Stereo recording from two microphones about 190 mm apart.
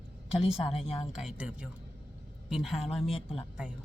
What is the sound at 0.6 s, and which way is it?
Speech, 30° left (ahead or behind).